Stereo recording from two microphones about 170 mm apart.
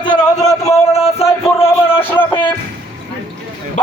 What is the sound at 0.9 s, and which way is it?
Speech, 35° left (ahead or behind).